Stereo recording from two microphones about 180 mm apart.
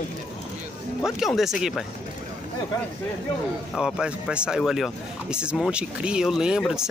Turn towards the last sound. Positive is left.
turn(degrees=-5)  # may be behind; listen again after turning